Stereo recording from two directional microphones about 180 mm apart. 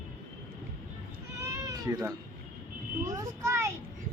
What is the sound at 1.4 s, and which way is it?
Cat, 15° right (ahead or behind).